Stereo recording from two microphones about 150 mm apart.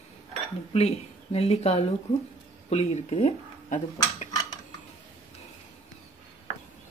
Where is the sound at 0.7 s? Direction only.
40° left (ahead or behind).